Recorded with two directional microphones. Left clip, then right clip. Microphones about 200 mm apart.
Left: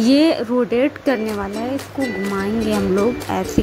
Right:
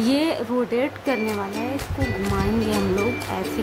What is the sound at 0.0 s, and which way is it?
Speech, 20° left (ahead or behind).